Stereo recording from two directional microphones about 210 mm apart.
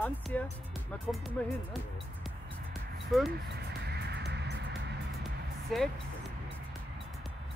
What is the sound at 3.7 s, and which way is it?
Music, 50° right (ahead or behind).